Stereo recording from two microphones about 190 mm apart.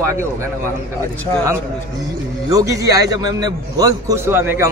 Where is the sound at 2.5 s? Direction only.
15° right (ahead or behind).